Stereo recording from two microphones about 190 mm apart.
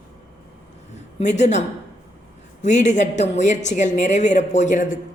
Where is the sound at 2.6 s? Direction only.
40° left (ahead or behind).